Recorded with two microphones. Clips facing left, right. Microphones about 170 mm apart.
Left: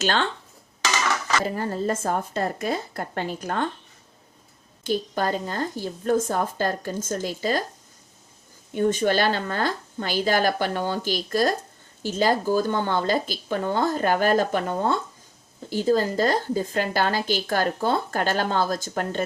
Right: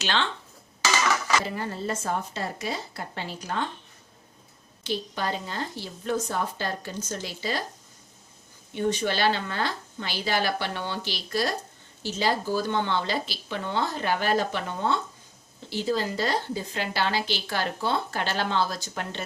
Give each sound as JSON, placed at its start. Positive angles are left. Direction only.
{"t": 0.0, "sound": "a woman's voice", "side_deg": 45}
{"t": 1.5, "sound": "a woman's voice", "side_deg": 45}
{"t": 4.8, "sound": "a woman's voice", "side_deg": 45}
{"t": 8.7, "sound": "a woman's voice", "side_deg": 50}